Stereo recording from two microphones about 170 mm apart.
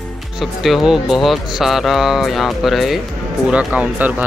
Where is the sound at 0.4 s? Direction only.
Centre (ahead or behind).